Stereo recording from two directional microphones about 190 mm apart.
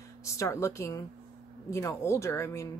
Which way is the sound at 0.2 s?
15° left (ahead or behind).